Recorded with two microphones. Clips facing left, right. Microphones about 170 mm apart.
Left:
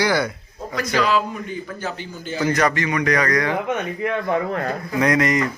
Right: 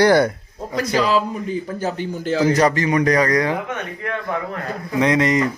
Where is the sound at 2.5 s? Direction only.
35° right (ahead or behind).